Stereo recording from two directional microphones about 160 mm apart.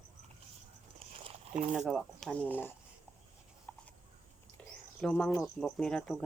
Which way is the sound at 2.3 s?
10° left (ahead or behind).